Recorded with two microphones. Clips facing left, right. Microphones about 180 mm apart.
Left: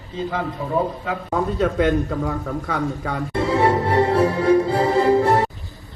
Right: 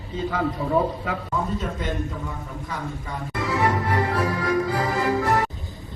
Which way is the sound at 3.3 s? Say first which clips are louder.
Left 5 dB; 30° left (ahead or behind).